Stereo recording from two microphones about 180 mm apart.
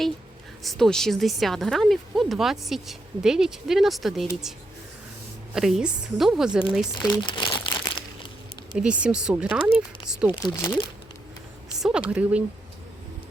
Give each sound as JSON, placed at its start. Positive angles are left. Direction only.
{"t": 0.6, "sound": "speech", "side_deg": 0}
{"t": 5.5, "sound": "speech", "side_deg": 0}
{"t": 7.0, "sound": "crumpling", "side_deg": 25}
{"t": 8.8, "sound": "speech", "side_deg": -5}
{"t": 11.8, "sound": "speech", "side_deg": -5}